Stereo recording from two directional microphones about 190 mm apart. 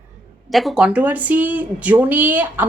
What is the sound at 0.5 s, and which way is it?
A woman's voice, centre (ahead or behind).